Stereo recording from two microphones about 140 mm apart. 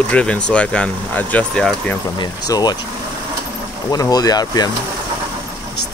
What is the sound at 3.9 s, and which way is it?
Speech, 25° left (ahead or behind).